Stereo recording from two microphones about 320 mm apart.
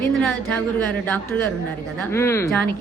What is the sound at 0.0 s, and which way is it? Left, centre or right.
A woman's voice, centre.